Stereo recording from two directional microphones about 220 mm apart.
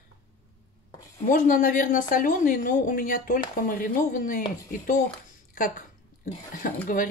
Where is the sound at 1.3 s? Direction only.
35° left (ahead or behind).